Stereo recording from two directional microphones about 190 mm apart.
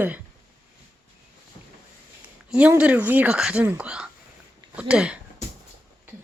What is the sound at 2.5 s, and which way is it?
Speech, 5° right (ahead or behind).